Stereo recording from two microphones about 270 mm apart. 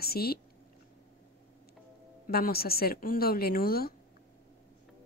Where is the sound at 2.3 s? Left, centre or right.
Left.